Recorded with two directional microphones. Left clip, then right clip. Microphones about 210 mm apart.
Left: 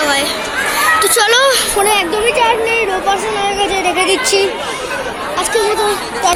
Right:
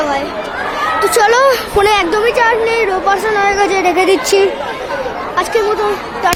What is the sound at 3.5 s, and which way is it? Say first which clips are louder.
Speech: right 2 dB; 20° right (ahead or behind).